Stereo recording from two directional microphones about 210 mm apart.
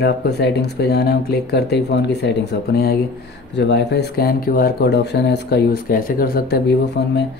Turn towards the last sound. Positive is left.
turn(degrees=55)  # may be behind; listen again after turning